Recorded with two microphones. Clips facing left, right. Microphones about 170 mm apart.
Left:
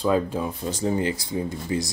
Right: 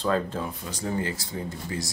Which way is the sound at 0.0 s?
10° left (ahead or behind).